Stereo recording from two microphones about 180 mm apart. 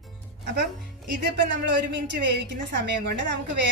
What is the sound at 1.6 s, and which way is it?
A woman's voice, 75° right (ahead or behind).